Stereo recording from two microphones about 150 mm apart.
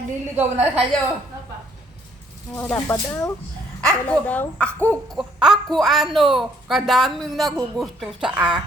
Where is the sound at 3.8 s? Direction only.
5° left (ahead or behind).